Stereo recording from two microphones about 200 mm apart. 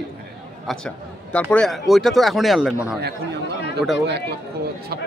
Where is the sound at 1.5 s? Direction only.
Centre (ahead or behind).